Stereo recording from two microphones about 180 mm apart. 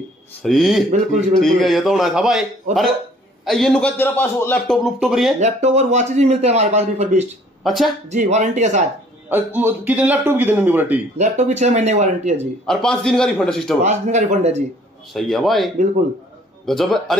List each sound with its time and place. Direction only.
0.4 s a man's voice: centre (ahead or behind)
3.4 s a man's voice: centre (ahead or behind)
5.4 s a man's voice: 40° right (ahead or behind)
7.6 s a man's voice: centre (ahead or behind)
8.1 s a man's voice: 40° right (ahead or behind)
9.3 s a man's voice: 10° right (ahead or behind)
11.1 s a man's voice: 40° right (ahead or behind)
12.6 s a man's voice: 5° left (ahead or behind)
13.8 s a man's voice: 40° right (ahead or behind)
15.1 s a man's voice: centre (ahead or behind)